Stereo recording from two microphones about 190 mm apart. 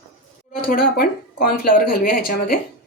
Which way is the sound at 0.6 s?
50° left (ahead or behind).